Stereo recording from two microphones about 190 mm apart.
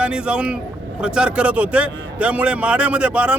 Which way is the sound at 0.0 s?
5° right (ahead or behind).